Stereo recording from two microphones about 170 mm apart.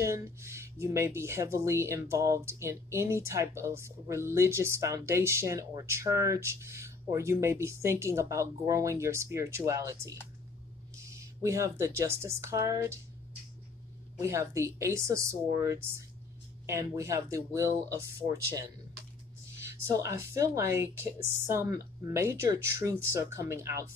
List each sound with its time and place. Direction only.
0.0 s speech: 15° right (ahead or behind)
14.2 s speech: 15° right (ahead or behind)